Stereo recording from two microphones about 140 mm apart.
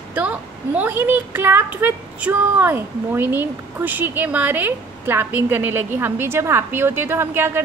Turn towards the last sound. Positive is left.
turn(degrees=-15)  # may be behind; listen again after turning